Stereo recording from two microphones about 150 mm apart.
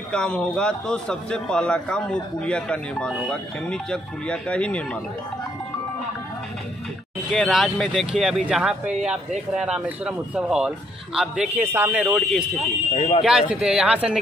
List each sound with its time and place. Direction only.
0.1 s a man's voice: 5° left (ahead or behind)
7.2 s a man's voice: centre (ahead or behind)
12.9 s speech: 40° left (ahead or behind)
13.2 s speech: 5° right (ahead or behind)